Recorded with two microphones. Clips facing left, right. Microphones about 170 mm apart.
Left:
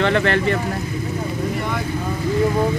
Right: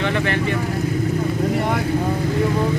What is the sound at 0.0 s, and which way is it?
Speech, 60° left (ahead or behind).